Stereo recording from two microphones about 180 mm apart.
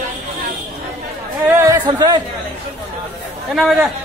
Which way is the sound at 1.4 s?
15° right (ahead or behind).